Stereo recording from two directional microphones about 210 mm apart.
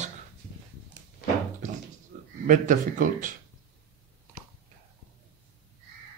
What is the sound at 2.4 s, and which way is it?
Speech, 35° right (ahead or behind).